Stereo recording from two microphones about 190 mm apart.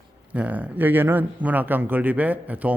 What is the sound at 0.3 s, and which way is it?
Speech, 5° right (ahead or behind).